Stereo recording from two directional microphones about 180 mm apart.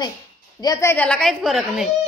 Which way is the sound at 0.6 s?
20° left (ahead or behind).